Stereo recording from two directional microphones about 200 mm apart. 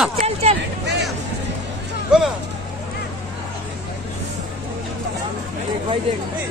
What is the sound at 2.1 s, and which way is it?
Speech, 5° right (ahead or behind).